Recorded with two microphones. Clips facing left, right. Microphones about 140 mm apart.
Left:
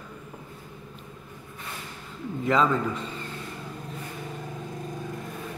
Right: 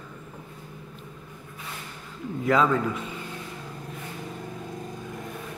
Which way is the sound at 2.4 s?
5° right (ahead or behind).